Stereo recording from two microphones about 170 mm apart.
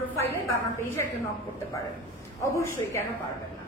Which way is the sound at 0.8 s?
15° left (ahead or behind).